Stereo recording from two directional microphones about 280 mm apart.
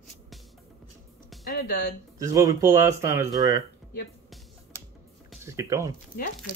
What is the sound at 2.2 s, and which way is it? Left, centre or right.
Speech, centre.